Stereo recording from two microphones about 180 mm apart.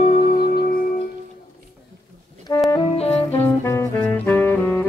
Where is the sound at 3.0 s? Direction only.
35° left (ahead or behind).